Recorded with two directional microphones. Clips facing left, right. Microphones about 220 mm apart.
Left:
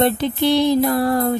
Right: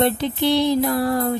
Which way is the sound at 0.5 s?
50° left (ahead or behind).